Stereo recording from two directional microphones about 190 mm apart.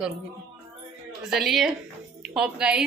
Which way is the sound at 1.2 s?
Centre (ahead or behind).